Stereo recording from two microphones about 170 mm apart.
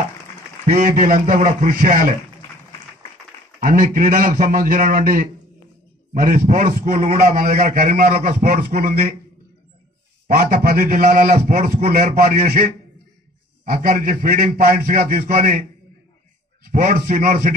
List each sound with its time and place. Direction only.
0.7 s a man's voice: 50° right (ahead or behind)
3.6 s a man's voice: 55° right (ahead or behind)
6.4 s a man's voice: 45° right (ahead or behind)
10.2 s a man's voice: 60° right (ahead or behind)
13.7 s a man's voice: 60° right (ahead or behind)
16.7 s a man's voice: 55° right (ahead or behind)